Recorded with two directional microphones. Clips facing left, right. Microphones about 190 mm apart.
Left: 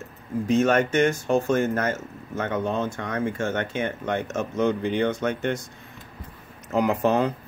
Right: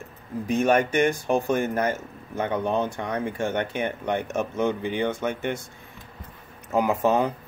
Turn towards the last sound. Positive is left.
turn(degrees=-10)  # may be behind; listen again after turning